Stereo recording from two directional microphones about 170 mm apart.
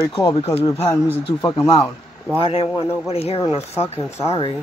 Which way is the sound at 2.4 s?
35° left (ahead or behind).